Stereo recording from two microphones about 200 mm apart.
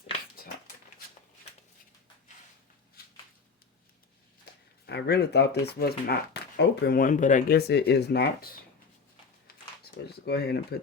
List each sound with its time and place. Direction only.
4.9 s speech: 55° left (ahead or behind)
10.2 s speech: 55° left (ahead or behind)